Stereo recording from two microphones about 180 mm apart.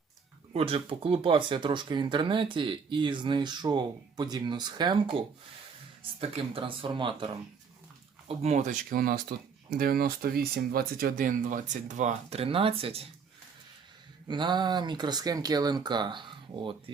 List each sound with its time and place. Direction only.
0.5 s speech: 30° right (ahead or behind)
8.3 s speech: 35° right (ahead or behind)
14.3 s speech: 25° right (ahead or behind)